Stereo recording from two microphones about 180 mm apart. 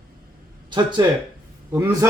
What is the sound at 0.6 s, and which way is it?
A man's voice, 25° right (ahead or behind).